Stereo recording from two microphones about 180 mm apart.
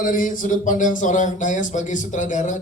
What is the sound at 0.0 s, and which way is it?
A woman's voice, 50° left (ahead or behind).